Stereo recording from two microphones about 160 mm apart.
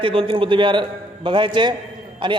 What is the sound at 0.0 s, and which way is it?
A man's voice, 35° right (ahead or behind).